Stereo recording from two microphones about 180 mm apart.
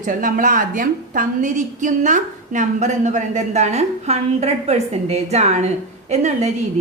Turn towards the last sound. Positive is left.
turn(degrees=-40)  # may be behind; listen again after turning